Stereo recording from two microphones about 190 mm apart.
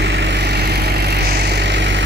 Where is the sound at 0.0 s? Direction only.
65° right (ahead or behind).